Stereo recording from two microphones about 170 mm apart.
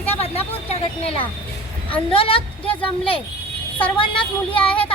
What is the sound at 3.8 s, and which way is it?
Speech, 30° left (ahead or behind).